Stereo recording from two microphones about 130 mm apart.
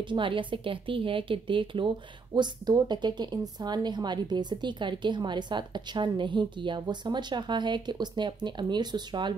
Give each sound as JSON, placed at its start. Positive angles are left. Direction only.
{"t": 0.1, "sound": "speech", "side_deg": -40}